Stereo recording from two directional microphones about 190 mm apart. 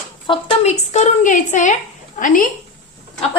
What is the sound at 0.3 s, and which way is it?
A woman's voice, 35° left (ahead or behind).